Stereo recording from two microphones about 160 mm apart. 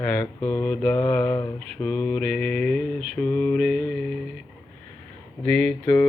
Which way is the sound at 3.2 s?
15° left (ahead or behind).